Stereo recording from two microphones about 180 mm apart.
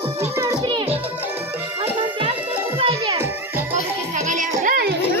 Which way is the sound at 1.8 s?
30° right (ahead or behind).